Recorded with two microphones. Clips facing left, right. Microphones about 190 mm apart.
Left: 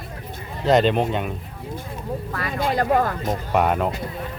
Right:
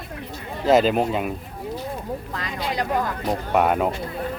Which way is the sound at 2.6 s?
50° left (ahead or behind).